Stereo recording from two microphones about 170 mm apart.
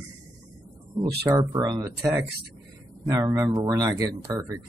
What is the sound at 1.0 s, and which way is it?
Speech, 25° right (ahead or behind).